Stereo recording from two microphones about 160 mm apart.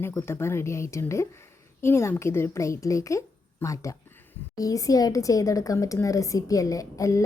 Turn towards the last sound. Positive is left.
turn(degrees=20)  # may be behind; listen again after turning